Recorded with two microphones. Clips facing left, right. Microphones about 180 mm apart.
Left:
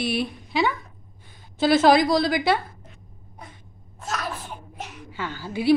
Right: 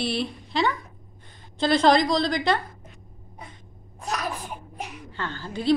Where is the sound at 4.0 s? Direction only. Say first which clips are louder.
Right 1 dB; 15° right (ahead or behind).